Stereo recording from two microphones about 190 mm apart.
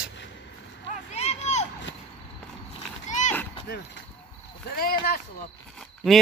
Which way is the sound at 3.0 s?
40° left (ahead or behind).